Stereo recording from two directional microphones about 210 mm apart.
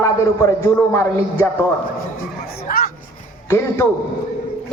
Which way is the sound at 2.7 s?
40° left (ahead or behind).